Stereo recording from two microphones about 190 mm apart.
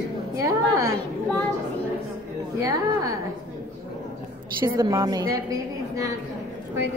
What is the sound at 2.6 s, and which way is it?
Speech, 15° right (ahead or behind).